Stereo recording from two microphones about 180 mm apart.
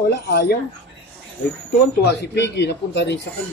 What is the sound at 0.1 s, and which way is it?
Speech, 70° left (ahead or behind).